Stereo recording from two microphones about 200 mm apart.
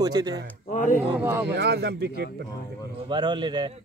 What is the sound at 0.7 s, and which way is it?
Speech, 40° left (ahead or behind).